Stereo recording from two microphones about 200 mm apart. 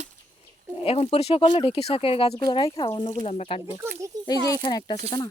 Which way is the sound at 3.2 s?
30° left (ahead or behind).